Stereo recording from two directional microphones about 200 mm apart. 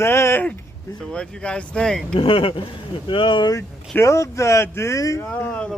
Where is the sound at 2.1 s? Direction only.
25° left (ahead or behind).